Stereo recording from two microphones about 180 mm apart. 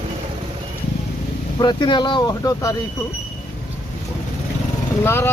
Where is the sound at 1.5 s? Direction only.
25° left (ahead or behind).